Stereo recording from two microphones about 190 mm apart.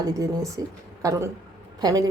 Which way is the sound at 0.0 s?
20° right (ahead or behind).